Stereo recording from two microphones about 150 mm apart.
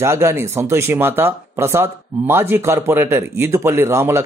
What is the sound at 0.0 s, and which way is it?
Speech, 20° right (ahead or behind).